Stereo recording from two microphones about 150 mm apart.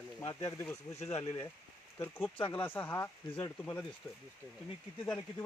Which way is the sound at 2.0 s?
15° left (ahead or behind).